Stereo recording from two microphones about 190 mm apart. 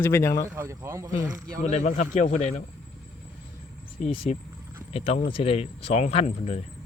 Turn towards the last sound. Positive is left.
turn(degrees=35)  # may be behind; listen again after turning